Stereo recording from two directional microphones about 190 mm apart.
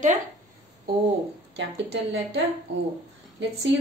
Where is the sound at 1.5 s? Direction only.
65° right (ahead or behind).